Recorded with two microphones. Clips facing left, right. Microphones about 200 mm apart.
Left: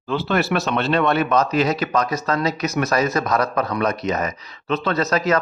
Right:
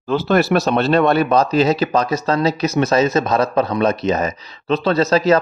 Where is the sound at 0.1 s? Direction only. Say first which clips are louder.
Right 5 dB; 40° right (ahead or behind).